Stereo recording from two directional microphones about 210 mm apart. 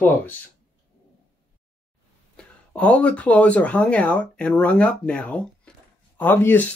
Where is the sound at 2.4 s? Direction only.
5° left (ahead or behind).